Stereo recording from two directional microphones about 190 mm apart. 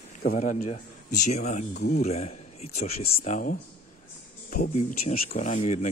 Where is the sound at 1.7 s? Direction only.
60° left (ahead or behind).